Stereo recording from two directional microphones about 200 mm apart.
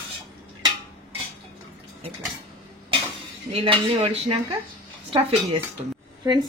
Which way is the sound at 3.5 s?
25° right (ahead or behind).